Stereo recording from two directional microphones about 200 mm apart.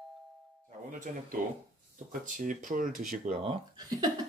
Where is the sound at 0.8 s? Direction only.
40° right (ahead or behind).